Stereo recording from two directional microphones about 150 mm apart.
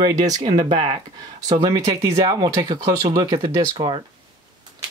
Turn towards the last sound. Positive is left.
turn(degrees=-35)  # may be behind; listen again after turning